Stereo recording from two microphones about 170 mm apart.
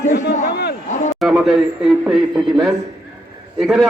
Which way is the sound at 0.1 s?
90° left.